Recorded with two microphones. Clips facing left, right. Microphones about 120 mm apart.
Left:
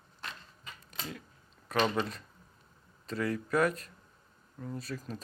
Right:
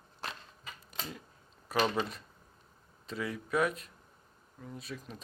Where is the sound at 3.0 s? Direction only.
Centre (ahead or behind).